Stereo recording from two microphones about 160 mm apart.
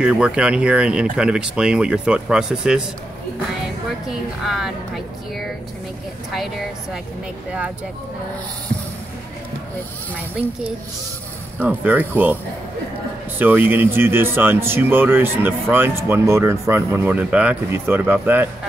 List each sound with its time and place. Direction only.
0.0 s speech: 5° right (ahead or behind)
4.1 s a woman's voice: centre (ahead or behind)
11.6 s speech: 10° right (ahead or behind)
13.4 s speech: 10° right (ahead or behind)